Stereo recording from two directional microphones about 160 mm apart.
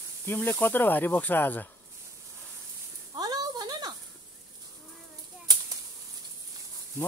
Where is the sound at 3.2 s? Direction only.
25° right (ahead or behind).